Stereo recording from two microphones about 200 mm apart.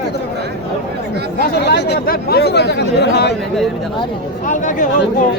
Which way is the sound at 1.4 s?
55° left (ahead or behind).